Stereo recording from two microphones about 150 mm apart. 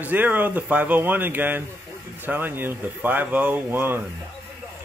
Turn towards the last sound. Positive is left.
turn(degrees=-15)  # may be behind; listen again after turning